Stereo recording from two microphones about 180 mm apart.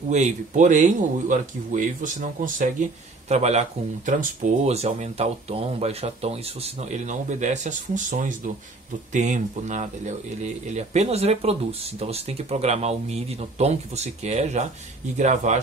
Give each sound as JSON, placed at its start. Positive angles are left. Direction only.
{"t": 0.1, "sound": "speech", "side_deg": -40}